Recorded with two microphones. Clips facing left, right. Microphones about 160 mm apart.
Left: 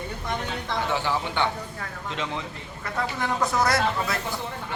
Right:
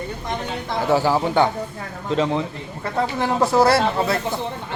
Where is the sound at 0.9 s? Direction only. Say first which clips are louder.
Right 11 dB; 40° right (ahead or behind).